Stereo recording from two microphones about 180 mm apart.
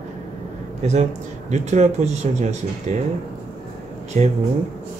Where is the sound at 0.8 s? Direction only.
40° right (ahead or behind).